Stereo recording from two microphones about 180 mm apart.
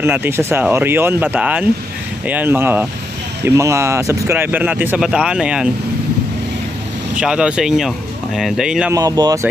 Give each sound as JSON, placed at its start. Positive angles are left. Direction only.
{"t": 0.0, "sound": "speech", "side_deg": -10}
{"t": 7.2, "sound": "speech", "side_deg": -5}
{"t": 8.9, "sound": "speech", "side_deg": -20}